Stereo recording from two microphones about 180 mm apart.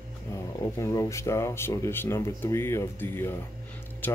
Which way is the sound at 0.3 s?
15° left (ahead or behind).